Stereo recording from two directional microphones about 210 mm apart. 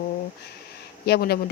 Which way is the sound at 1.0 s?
50° left (ahead or behind).